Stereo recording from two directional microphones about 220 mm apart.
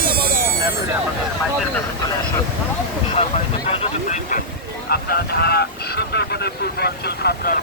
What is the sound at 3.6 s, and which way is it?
Speech, 25° left (ahead or behind).